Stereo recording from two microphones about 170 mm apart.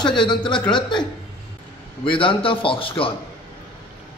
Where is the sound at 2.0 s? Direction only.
30° left (ahead or behind).